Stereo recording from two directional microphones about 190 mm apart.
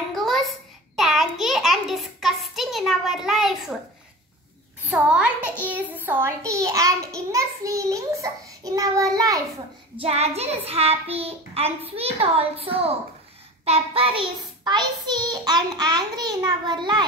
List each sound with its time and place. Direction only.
0.1 s a sound: centre (ahead or behind)
4.8 s a child's voice: 5° right (ahead or behind)
9.9 s a child's voice: 35° right (ahead or behind)